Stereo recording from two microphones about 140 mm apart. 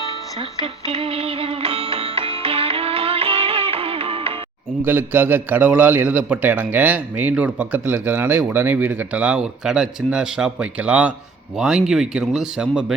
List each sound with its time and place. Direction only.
0.6 s music: 45° right (ahead or behind)
4.8 s a man's voice: 15° right (ahead or behind)